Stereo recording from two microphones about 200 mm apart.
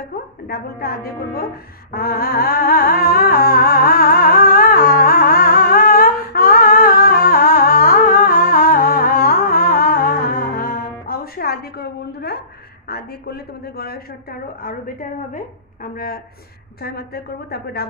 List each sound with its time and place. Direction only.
0.5 s a woman's voice: 50° left (ahead or behind)
1.9 s humming: 50° left (ahead or behind)
12.8 s a woman's voice: 50° left (ahead or behind)